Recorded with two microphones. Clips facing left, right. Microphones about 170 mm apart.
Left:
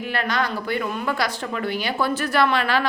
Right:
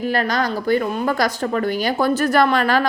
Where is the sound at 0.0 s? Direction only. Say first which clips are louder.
Right 4 dB; 40° right (ahead or behind).